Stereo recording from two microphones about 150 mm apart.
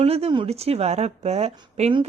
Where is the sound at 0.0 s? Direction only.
40° right (ahead or behind).